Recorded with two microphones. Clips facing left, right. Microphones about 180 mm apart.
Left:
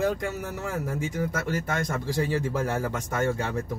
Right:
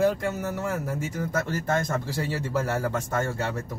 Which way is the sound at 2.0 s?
15° left (ahead or behind).